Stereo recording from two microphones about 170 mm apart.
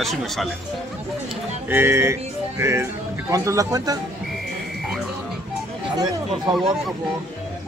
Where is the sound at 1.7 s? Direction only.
15° right (ahead or behind).